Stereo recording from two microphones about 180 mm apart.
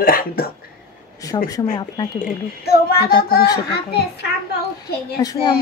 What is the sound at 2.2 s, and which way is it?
A child's voice, 60° left (ahead or behind).